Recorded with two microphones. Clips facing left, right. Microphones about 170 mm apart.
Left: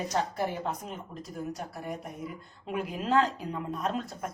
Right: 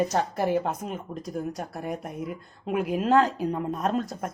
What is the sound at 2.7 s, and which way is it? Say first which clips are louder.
Speech: right 6 dB; 50° right (ahead or behind).